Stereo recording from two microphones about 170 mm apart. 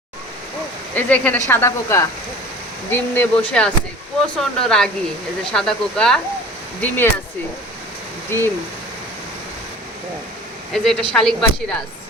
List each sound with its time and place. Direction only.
0.9 s speech: 10° left (ahead or behind)
8.3 s speech: 15° left (ahead or behind)
10.7 s speech: 5° left (ahead or behind)